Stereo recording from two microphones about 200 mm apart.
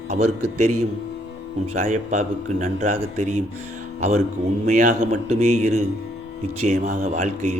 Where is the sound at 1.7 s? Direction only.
40° right (ahead or behind).